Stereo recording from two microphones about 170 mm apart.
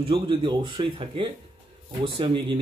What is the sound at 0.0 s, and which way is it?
Speech, 30° right (ahead or behind).